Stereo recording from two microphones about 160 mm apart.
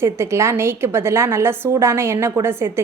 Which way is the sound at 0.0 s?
15° right (ahead or behind).